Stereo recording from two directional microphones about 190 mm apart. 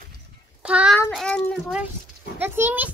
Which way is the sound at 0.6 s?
5° right (ahead or behind).